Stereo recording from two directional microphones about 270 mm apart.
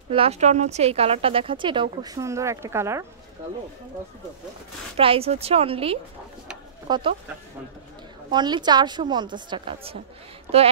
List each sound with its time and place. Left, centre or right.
0.1 s speech: right
4.9 s speech: right
8.3 s a woman's voice: centre